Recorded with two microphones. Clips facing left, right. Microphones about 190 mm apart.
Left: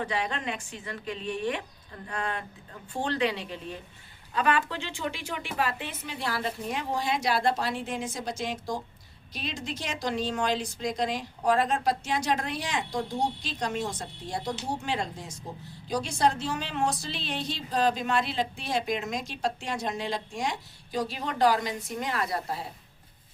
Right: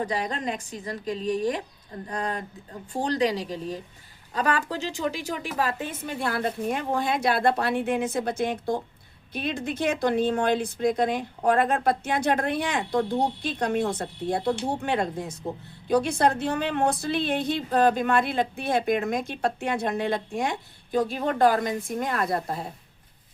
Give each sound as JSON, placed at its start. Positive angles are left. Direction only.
{"t": 0.0, "sound": "a woman's voice", "side_deg": -40}